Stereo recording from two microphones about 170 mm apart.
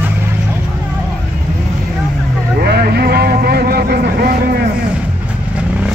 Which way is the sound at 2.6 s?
70° right (ahead or behind).